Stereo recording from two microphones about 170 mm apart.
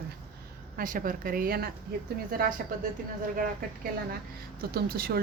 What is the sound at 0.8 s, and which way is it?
Speech, 55° right (ahead or behind).